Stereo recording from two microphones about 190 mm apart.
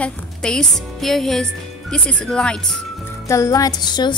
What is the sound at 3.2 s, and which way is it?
Music, 15° left (ahead or behind).